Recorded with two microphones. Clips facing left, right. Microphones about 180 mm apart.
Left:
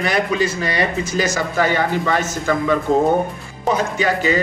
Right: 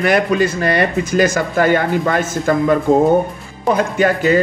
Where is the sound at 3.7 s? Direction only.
55° right (ahead or behind).